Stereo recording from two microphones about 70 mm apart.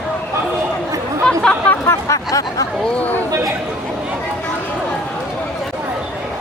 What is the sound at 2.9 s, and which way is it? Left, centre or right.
Chatter, left.